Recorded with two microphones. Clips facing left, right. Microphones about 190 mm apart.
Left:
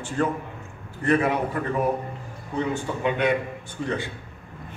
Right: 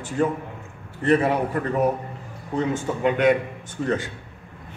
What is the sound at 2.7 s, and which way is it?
Speech, 45° right (ahead or behind).